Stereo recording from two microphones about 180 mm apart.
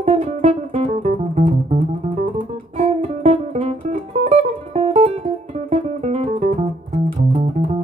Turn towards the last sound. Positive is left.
turn(degrees=-35)  # may be behind; listen again after turning